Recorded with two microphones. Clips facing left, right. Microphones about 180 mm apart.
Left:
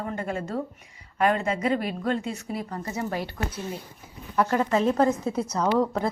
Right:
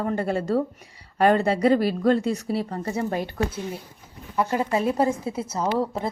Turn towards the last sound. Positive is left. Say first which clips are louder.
# left 1 dB
turn(degrees=-5)  # may be behind; listen again after turning